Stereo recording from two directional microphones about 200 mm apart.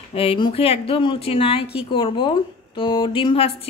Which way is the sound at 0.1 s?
30° left (ahead or behind).